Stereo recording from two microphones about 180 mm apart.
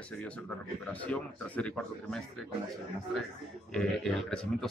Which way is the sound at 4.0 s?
Centre (ahead or behind).